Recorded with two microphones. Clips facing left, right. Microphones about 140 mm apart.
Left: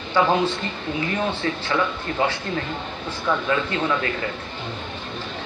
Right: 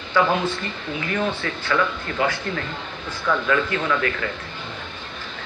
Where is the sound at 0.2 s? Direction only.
20° left (ahead or behind).